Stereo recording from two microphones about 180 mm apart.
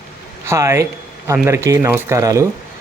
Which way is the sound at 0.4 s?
15° right (ahead or behind).